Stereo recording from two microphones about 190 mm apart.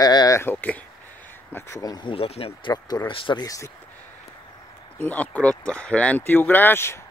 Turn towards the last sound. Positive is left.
turn(degrees=15)  # may be behind; listen again after turning